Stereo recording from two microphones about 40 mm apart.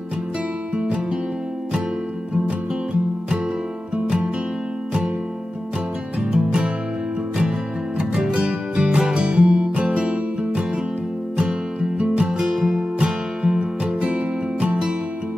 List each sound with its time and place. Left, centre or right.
0.7 s music: right
3.9 s music: right
6.3 s music: right
8.1 s music: right
12.0 s music: centre